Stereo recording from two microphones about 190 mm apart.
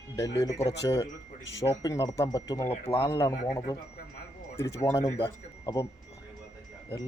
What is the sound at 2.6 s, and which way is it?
Speech, 30° left (ahead or behind).